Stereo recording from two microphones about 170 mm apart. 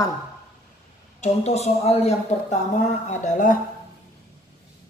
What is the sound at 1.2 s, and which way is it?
Speech, 40° left (ahead or behind).